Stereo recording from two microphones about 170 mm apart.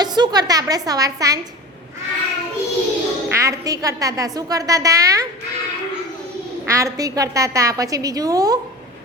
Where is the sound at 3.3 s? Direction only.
20° right (ahead or behind).